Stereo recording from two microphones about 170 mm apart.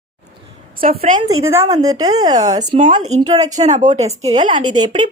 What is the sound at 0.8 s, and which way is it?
Speech, 50° right (ahead or behind).